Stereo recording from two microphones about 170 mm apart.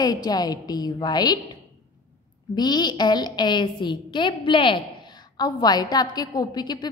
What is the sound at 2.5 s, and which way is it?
A woman's voice, 25° left (ahead or behind).